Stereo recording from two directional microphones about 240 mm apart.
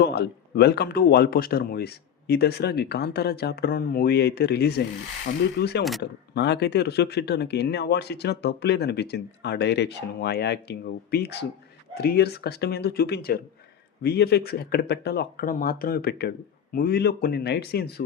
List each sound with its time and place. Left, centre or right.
0.0 s speech: left